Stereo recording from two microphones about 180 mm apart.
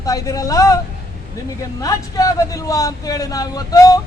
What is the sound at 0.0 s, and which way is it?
Speech, 20° left (ahead or behind).